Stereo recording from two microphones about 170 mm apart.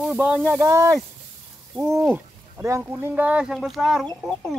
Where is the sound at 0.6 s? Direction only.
20° right (ahead or behind).